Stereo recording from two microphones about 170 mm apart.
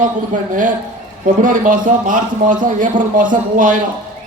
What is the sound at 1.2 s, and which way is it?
A man's voice, 50° right (ahead or behind).